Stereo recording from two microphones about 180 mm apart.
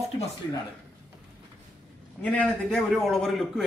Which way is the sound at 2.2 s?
10° left (ahead or behind).